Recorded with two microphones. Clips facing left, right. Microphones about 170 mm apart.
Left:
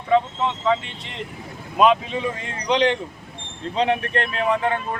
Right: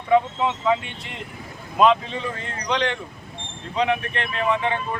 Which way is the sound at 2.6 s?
15° left (ahead or behind).